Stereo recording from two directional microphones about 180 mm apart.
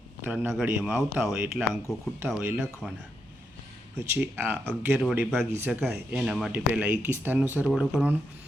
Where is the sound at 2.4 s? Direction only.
15° right (ahead or behind).